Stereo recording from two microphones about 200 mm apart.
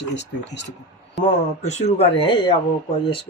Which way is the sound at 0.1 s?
60° left (ahead or behind).